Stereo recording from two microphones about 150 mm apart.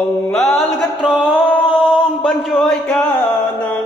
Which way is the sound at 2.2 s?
Centre (ahead or behind).